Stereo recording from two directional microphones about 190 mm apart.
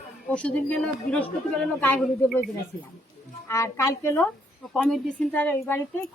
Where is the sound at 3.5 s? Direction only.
15° left (ahead or behind).